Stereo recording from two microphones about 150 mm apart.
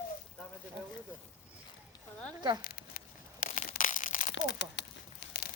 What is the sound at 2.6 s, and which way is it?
Crumpling, 90° left.